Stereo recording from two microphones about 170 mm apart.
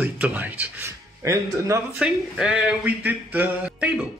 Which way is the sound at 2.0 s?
5° right (ahead or behind).